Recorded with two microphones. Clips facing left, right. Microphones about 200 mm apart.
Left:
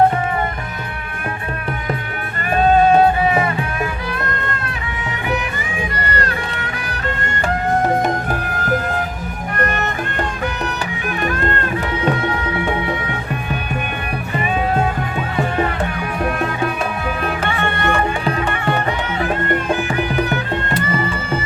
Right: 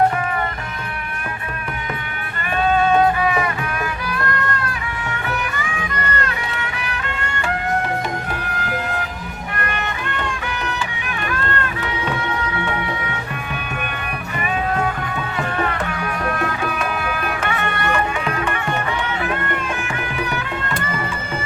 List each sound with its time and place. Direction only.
2.6 s music: 35° left (ahead or behind)
5.8 s music: 35° left (ahead or behind)
8.0 s music: 45° left (ahead or behind)
17.2 s music: 30° left (ahead or behind)